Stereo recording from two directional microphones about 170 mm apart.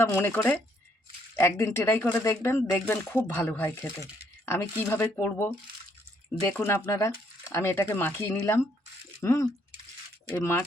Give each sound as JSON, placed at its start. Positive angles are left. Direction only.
{"t": 0.0, "sound": "speech", "side_deg": 15}